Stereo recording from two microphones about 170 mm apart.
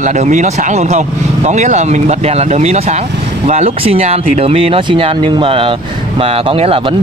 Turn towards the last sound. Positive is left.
turn(degrees=-35)  # may be behind; listen again after turning